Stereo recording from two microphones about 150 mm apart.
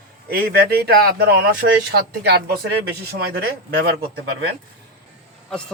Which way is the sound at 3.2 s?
90° right.